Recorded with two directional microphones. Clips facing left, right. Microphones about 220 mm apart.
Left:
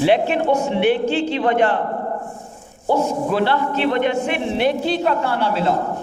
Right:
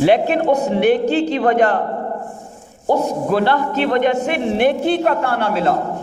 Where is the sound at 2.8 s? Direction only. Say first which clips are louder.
Right 1 dB; 45° right (ahead or behind).